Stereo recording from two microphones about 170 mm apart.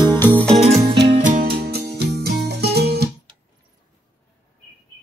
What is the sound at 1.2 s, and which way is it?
Music, 50° right (ahead or behind).